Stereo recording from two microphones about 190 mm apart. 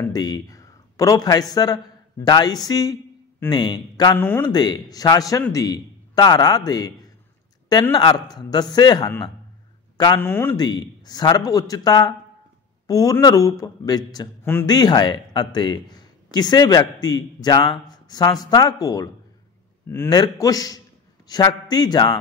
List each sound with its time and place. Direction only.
0.0 s a man's voice: 20° left (ahead or behind)
7.9 s a man's voice: 20° left (ahead or behind)
10.2 s a man's voice: 10° left (ahead or behind)